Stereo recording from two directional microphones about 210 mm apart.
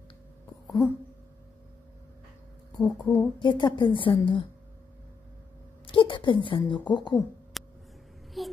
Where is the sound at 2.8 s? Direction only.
20° left (ahead or behind).